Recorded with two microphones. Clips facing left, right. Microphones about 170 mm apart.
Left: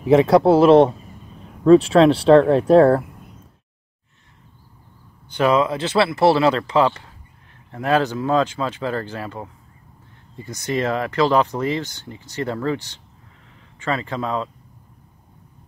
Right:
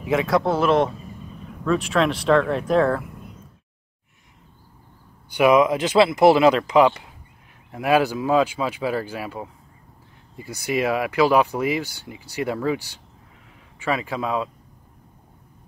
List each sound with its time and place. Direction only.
0.0 s speech: 30° left (ahead or behind)
5.3 s speech: 15° right (ahead or behind)